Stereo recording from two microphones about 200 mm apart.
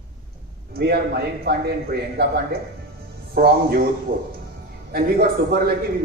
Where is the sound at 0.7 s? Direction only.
50° right (ahead or behind).